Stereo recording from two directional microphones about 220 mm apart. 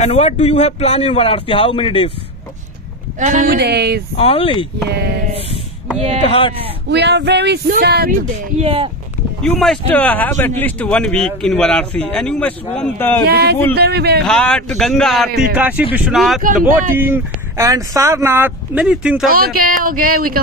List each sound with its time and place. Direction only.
0.0 s speech: 30° left (ahead or behind)
3.2 s speech: 35° right (ahead or behind)
3.5 s speech: 50° right (ahead or behind)
4.2 s speech: 25° left (ahead or behind)
4.8 s speech: 50° right (ahead or behind)
5.9 s speech: 30° right (ahead or behind)
6.2 s speech: 25° left (ahead or behind)
6.9 s speech: 50° right (ahead or behind)
8.5 s speech: 25° right (ahead or behind)
9.4 s a man's voice: centre (ahead or behind)
13.2 s speech: 45° right (ahead or behind)
14.2 s a man's voice: 5° left (ahead or behind)
17.0 s speech: 10° right (ahead or behind)
19.2 s speech: 40° right (ahead or behind)